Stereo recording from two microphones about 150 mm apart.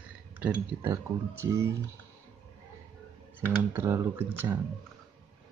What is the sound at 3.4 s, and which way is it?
Speech, 15° right (ahead or behind).